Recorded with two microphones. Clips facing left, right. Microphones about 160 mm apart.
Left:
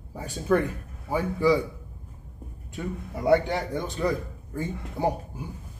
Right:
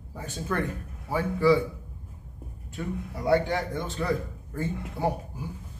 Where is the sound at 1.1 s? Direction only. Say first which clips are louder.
Even; 15° left (ahead or behind).